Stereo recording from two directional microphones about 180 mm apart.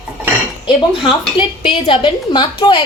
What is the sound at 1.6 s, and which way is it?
A woman's voice, 30° left (ahead or behind).